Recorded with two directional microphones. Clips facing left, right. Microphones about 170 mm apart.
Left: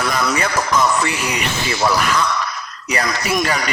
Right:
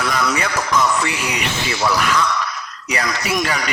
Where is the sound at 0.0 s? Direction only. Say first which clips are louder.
Left 1 dB; 40° left (ahead or behind).